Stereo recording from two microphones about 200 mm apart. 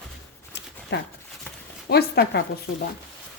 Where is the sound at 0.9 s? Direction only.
60° left (ahead or behind).